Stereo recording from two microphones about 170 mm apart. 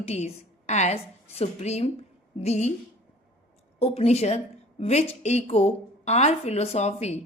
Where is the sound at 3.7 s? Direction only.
35° left (ahead or behind).